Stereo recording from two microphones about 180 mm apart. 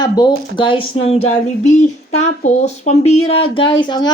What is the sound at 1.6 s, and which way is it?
Speech, 40° left (ahead or behind).